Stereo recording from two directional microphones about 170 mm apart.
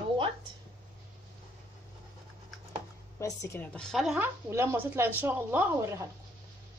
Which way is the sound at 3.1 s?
15° left (ahead or behind).